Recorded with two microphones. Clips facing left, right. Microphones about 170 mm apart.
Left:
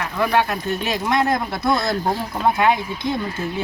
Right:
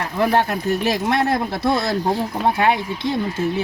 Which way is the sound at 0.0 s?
30° right (ahead or behind).